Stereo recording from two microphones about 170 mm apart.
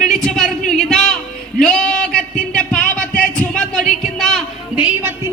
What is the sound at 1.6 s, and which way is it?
Music, 5° left (ahead or behind).